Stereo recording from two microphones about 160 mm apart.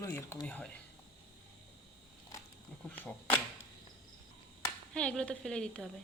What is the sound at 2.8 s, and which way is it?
Speech, 10° left (ahead or behind).